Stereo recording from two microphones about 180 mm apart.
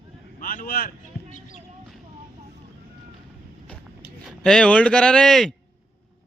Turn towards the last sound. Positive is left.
turn(degrees=0)  # may be behind; listen again after turning